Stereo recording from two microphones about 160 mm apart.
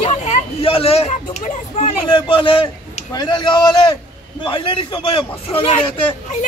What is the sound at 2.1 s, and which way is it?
A man's voice, 35° left (ahead or behind).